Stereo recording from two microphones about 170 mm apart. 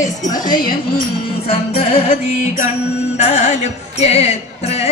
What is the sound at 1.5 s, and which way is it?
Speech, 35° left (ahead or behind).